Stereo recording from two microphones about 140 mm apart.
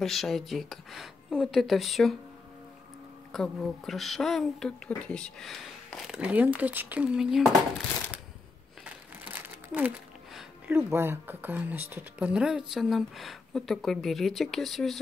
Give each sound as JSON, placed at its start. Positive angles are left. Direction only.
{"t": 0.0, "sound": "speech", "side_deg": 0}
{"t": 3.3, "sound": "speech", "side_deg": 5}
{"t": 8.8, "sound": "crumpling", "side_deg": -15}
{"t": 10.7, "sound": "speech", "side_deg": -15}